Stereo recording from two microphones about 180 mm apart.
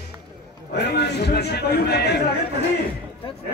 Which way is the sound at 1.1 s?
65° left (ahead or behind).